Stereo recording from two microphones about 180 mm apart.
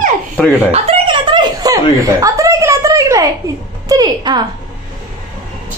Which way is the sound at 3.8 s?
20° right (ahead or behind).